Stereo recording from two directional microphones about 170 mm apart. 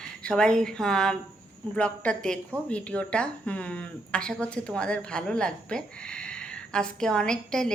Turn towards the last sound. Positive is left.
turn(degrees=5)  # may be behind; listen again after turning